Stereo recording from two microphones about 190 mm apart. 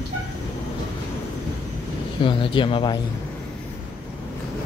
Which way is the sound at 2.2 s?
25° left (ahead or behind).